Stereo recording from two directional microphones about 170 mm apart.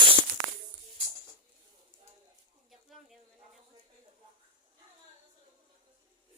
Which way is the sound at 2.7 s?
Centre (ahead or behind).